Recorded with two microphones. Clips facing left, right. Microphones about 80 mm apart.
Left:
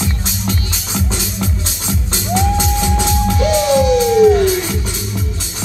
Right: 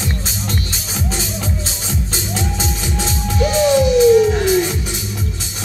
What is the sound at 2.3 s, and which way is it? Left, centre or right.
Music, left.